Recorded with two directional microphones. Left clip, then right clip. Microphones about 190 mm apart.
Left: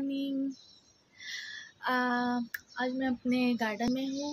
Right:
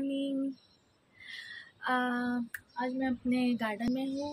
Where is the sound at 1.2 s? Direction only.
15° left (ahead or behind).